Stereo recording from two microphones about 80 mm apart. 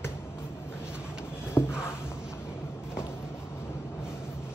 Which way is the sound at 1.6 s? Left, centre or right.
Left.